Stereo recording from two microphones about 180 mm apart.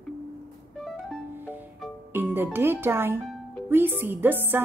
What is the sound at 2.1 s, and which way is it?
Music, 10° right (ahead or behind).